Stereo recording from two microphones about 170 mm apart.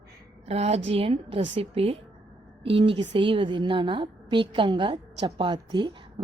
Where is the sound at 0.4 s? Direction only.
40° right (ahead or behind).